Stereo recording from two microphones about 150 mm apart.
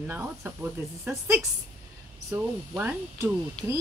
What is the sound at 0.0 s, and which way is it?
Speech, 15° right (ahead or behind).